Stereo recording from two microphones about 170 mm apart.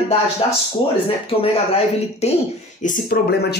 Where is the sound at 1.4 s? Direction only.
35° left (ahead or behind).